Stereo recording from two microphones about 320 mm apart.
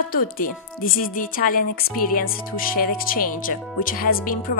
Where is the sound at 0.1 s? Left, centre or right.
Left.